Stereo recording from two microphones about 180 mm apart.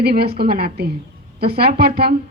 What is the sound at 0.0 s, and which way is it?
A woman's voice, 60° right (ahead or behind).